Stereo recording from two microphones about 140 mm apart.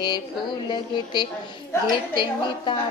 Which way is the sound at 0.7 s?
30° left (ahead or behind).